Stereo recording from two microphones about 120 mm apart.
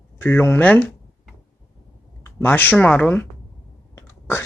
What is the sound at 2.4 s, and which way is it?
Speech, 15° left (ahead or behind).